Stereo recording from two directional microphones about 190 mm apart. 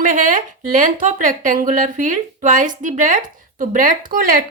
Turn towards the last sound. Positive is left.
turn(degrees=-45)  # may be behind; listen again after turning